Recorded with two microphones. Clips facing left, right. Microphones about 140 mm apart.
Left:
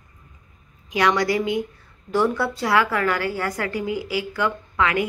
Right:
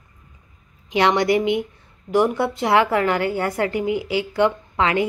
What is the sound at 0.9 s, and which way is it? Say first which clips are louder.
A woman's voice: right 3 dB; 25° right (ahead or behind).